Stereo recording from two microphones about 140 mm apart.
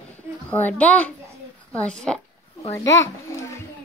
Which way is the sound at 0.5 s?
10° left (ahead or behind).